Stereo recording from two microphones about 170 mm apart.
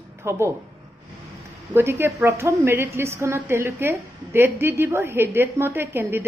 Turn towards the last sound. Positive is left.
turn(degrees=-15)  # may be behind; listen again after turning